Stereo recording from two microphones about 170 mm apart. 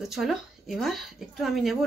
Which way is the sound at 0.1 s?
Centre (ahead or behind).